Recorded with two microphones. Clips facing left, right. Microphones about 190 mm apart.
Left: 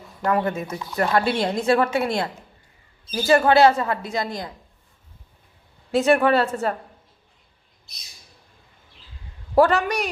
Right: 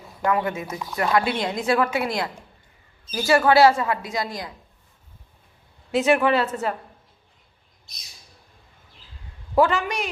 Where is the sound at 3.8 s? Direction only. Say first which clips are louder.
Left 1 dB; 35° left (ahead or behind).